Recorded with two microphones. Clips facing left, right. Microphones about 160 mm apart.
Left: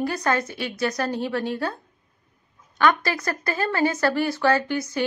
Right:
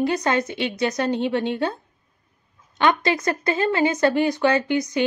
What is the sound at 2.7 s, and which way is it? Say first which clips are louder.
Speech: right 2 dB; 20° right (ahead or behind).